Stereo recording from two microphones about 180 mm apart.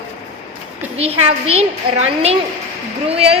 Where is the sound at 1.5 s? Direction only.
35° right (ahead or behind).